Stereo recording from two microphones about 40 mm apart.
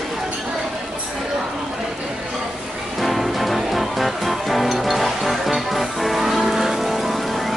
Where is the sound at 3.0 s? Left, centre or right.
Centre.